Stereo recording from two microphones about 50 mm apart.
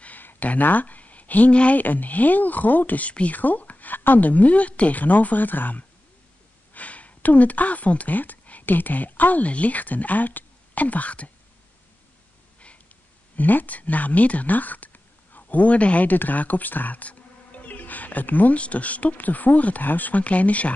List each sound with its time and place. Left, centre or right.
0.0 s speech: left
13.4 s speech: left